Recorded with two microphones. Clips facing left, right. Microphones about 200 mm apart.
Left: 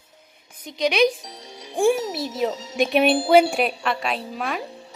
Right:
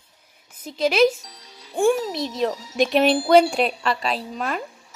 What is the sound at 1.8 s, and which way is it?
A child's voice, 10° left (ahead or behind).